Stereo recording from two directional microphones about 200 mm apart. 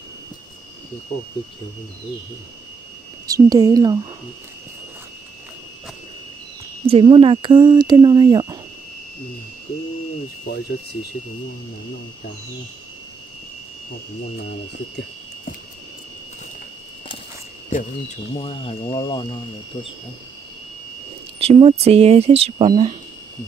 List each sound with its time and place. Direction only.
3.3 s a woman's voice: 15° right (ahead or behind)
6.9 s speech: 25° right (ahead or behind)
17.6 s speech: 45° left (ahead or behind)
18.3 s speech: 25° left (ahead or behind)
21.4 s speech: 30° right (ahead or behind)